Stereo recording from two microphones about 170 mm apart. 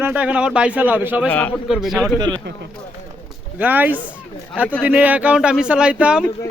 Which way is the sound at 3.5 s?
10° right (ahead or behind).